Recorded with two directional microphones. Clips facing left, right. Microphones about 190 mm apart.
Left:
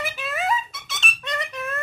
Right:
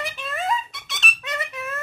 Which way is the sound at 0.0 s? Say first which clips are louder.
Left 1 dB; 5° left (ahead or behind).